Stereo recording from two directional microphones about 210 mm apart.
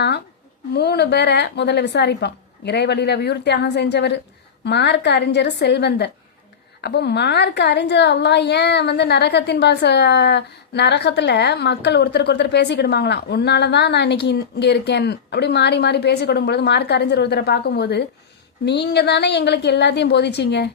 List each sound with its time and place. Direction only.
0.7 s a woman's voice: 50° left (ahead or behind)